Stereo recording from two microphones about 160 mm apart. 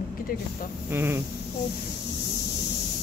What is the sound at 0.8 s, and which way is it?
Speech, 15° right (ahead or behind).